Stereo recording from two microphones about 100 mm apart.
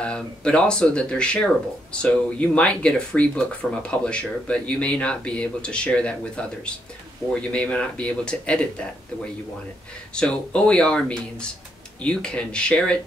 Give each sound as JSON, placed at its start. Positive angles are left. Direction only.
{"t": 0.0, "sound": "speech", "side_deg": 10}
{"t": 7.2, "sound": "speech", "side_deg": 25}
{"t": 7.5, "sound": "speech", "side_deg": 10}
{"t": 10.1, "sound": "speech", "side_deg": 10}